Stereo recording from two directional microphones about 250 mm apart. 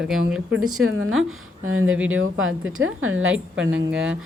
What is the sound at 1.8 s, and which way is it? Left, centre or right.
Speech, centre.